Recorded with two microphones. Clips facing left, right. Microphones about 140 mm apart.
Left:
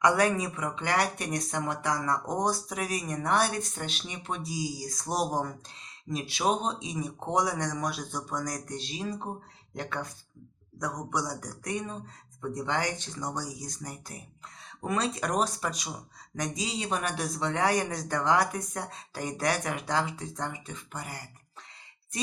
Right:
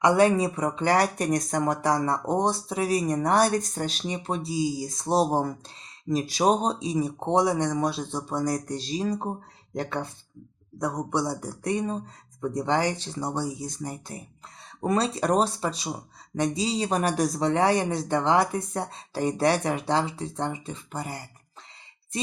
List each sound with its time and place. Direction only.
0.0 s speech: 25° right (ahead or behind)